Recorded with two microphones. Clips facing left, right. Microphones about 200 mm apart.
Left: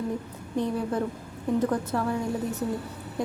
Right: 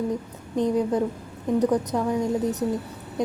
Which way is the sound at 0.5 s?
15° right (ahead or behind).